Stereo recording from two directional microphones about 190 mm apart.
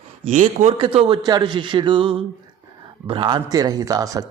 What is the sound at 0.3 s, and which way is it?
A man's voice, 35° right (ahead or behind).